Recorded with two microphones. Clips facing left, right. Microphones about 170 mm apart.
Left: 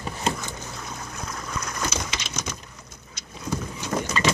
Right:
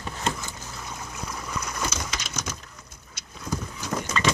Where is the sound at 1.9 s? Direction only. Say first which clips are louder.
Left 2 dB; centre (ahead or behind).